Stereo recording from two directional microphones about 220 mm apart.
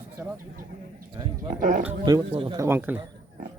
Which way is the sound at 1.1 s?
20° right (ahead or behind).